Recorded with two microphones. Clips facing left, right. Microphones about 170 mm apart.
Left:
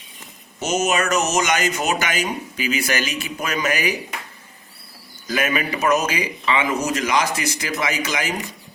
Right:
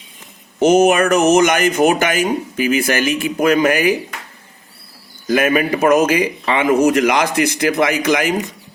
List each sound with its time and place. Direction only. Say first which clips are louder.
0.6 s speech: right 10 dB; 55° right (ahead or behind)
5.3 s speech: right 8 dB; 50° right (ahead or behind)